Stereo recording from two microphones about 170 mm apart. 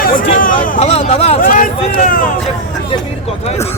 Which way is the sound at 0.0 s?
55° left (ahead or behind).